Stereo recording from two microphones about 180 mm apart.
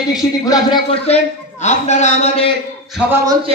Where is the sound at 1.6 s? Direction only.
40° left (ahead or behind).